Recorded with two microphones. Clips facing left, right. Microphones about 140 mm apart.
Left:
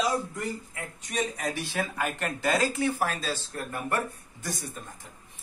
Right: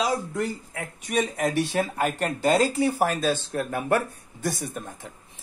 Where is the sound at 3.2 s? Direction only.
60° right (ahead or behind).